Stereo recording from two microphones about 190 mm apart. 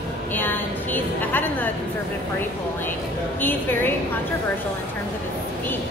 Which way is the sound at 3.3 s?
10° left (ahead or behind).